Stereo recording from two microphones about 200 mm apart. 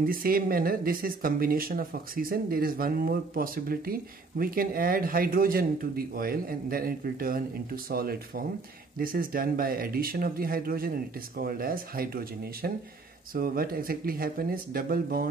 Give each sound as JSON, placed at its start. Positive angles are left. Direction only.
{"t": 0.0, "sound": "speech", "side_deg": -45}